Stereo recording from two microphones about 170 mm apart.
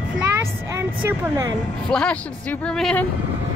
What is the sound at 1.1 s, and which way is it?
Speech, 20° right (ahead or behind).